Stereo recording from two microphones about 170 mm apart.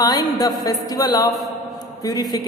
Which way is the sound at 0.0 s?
20° left (ahead or behind).